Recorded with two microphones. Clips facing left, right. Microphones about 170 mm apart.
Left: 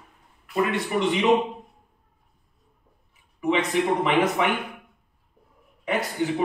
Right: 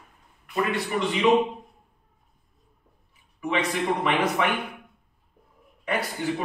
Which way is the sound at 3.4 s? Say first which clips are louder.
Left 4 dB; 20° left (ahead or behind).